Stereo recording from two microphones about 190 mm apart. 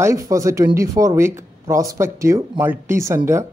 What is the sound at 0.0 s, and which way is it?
Speech, 15° right (ahead or behind).